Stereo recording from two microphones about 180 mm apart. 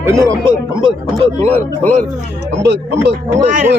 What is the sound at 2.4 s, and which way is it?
Speech, 70° right (ahead or behind).